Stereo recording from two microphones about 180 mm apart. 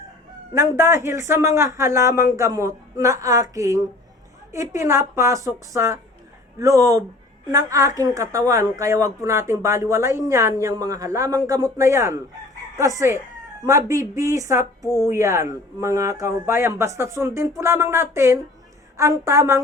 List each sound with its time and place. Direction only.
0.5 s speech: 15° right (ahead or behind)